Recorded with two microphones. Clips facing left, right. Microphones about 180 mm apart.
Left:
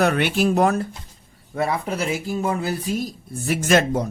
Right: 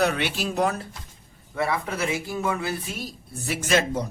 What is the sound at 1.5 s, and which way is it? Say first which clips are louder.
Speech: left 3 dB; 35° left (ahead or behind).